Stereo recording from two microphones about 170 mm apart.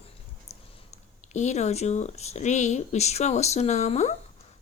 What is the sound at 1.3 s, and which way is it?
Speech, 40° left (ahead or behind).